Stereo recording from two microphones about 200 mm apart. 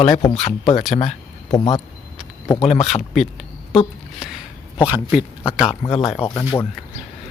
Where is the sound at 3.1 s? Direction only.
Centre (ahead or behind).